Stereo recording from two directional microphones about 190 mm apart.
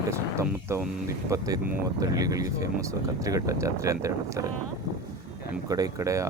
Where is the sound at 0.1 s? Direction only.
15° right (ahead or behind).